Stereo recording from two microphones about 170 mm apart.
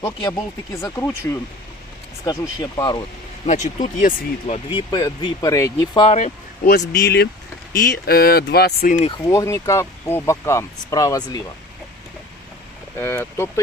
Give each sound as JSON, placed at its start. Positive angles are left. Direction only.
{"t": 0.0, "sound": "speech", "side_deg": 20}
{"t": 3.4, "sound": "speech", "side_deg": 45}
{"t": 4.5, "sound": "speech", "side_deg": 30}
{"t": 6.1, "sound": "speech", "side_deg": 40}
{"t": 6.7, "sound": "speech", "side_deg": 80}
{"t": 7.8, "sound": "speech", "side_deg": 65}
{"t": 9.0, "sound": "speech", "side_deg": 30}
{"t": 13.0, "sound": "speech", "side_deg": 15}